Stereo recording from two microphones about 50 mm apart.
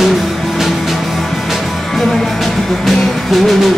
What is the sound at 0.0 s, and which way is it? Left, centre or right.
Music, centre.